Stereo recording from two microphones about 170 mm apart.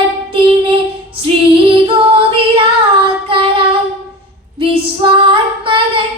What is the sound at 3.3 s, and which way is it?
Child singing, 30° right (ahead or behind).